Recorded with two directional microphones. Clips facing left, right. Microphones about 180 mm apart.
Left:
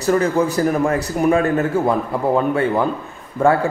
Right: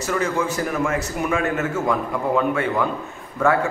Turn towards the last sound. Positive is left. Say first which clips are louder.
# left 4 dB
turn(degrees=30)  # may be behind; listen again after turning